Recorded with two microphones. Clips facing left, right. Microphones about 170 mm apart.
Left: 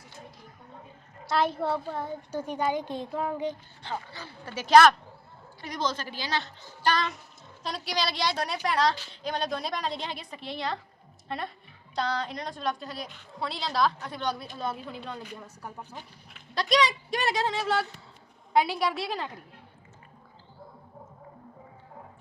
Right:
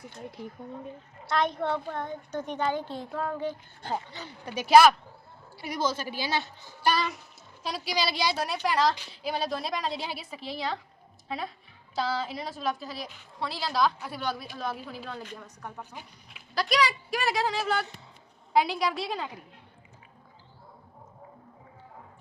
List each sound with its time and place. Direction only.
1.3 s a child's voice: 5° left (ahead or behind)
3.9 s a woman's voice: 20° right (ahead or behind); by 15.7 s 5° left (ahead or behind)
15.9 s a woman's voice: 5° right (ahead or behind)